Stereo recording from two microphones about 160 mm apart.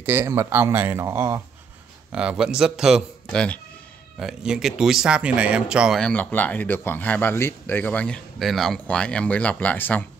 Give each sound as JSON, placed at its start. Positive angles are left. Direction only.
{"t": 0.0, "sound": "speech", "side_deg": -10}
{"t": 2.1, "sound": "a man's voice", "side_deg": -5}